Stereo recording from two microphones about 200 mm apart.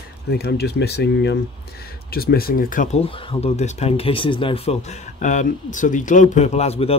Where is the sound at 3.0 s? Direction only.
25° left (ahead or behind).